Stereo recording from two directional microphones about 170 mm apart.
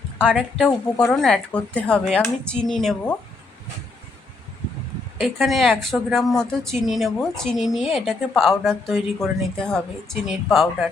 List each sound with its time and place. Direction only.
0.5 s speech: 5° left (ahead or behind)
5.2 s speech: centre (ahead or behind)